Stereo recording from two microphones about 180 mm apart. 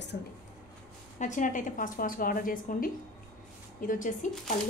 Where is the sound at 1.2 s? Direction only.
45° left (ahead or behind).